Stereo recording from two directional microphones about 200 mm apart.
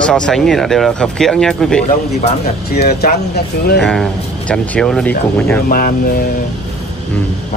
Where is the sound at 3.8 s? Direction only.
5° left (ahead or behind).